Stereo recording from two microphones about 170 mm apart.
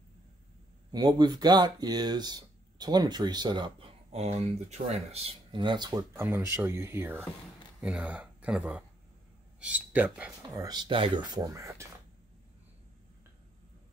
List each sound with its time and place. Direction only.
0.9 s speech: 25° right (ahead or behind)
6.1 s speech: 15° right (ahead or behind)
10.6 s speech: 25° right (ahead or behind)